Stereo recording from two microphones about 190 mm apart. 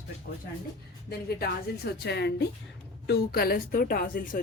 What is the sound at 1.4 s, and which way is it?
A woman's voice, 55° left (ahead or behind).